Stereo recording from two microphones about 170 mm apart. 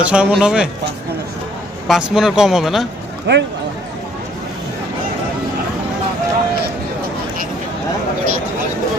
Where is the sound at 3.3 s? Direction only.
90° right.